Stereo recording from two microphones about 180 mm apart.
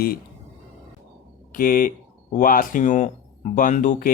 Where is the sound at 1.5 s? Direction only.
50° left (ahead or behind).